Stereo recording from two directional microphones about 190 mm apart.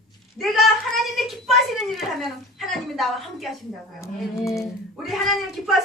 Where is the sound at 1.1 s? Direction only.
Centre (ahead or behind).